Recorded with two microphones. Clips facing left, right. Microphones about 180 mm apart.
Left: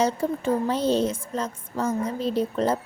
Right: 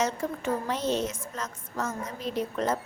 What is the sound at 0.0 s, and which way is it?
A woman's voice, 30° left (ahead or behind).